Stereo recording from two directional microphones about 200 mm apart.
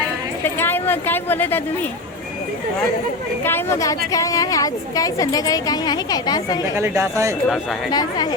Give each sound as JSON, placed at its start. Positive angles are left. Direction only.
{"t": 0.4, "sound": "a woman's voice", "side_deg": 10}
{"t": 3.4, "sound": "a woman's voice", "side_deg": 10}
{"t": 6.7, "sound": "speech", "side_deg": -15}
{"t": 7.4, "sound": "speech", "side_deg": 0}
{"t": 7.9, "sound": "speech", "side_deg": 20}